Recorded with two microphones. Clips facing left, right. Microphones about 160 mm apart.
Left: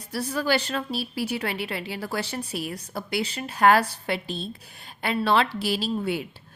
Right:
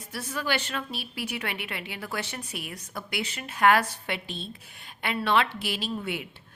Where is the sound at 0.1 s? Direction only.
35° left (ahead or behind).